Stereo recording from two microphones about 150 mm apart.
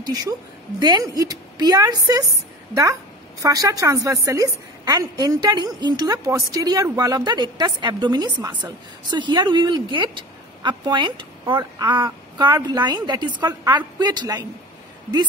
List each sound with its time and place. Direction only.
0.0 s a woman's voice: 25° right (ahead or behind)